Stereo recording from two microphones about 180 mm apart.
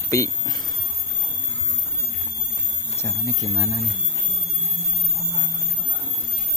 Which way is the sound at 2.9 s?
20° left (ahead or behind).